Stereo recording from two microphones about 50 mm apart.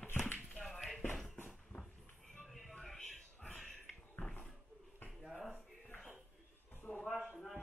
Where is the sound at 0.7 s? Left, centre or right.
Centre.